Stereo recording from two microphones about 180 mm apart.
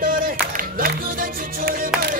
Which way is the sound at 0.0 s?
50° right (ahead or behind).